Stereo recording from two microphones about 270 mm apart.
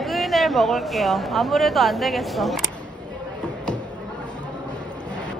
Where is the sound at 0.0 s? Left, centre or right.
Centre.